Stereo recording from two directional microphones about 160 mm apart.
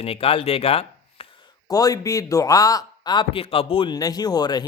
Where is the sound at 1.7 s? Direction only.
20° left (ahead or behind).